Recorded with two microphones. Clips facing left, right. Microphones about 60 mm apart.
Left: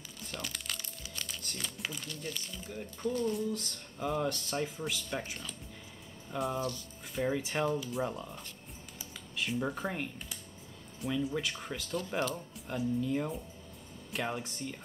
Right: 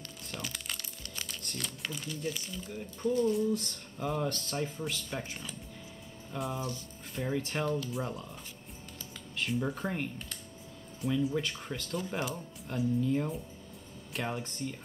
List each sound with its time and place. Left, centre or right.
0.2 s crumpling: centre
1.1 s speech: centre
8.9 s typing: centre
11.0 s speech: centre